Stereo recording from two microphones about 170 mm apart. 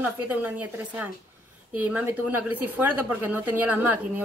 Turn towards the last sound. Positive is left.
turn(degrees=-10)  # may be behind; listen again after turning